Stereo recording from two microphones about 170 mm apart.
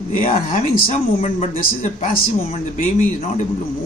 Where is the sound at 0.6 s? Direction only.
45° left (ahead or behind).